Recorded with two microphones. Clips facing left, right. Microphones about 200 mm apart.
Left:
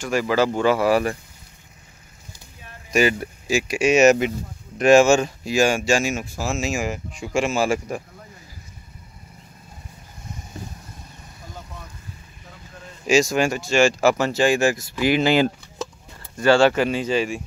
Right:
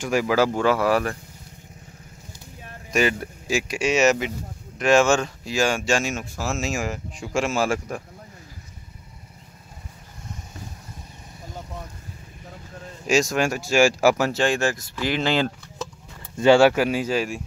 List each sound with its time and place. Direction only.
0.0 s speech: 10° right (ahead or behind)
2.9 s speech: 5° left (ahead or behind)
4.0 s speech: 50° left (ahead or behind)
4.8 s speech: 10° left (ahead or behind)
13.0 s speech: centre (ahead or behind)
16.3 s speech: 15° right (ahead or behind)